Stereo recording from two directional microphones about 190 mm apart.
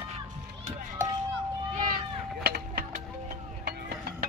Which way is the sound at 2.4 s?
50° right (ahead or behind).